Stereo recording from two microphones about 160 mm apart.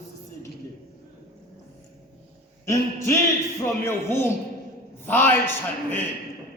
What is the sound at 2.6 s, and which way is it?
A man's voice, 15° left (ahead or behind).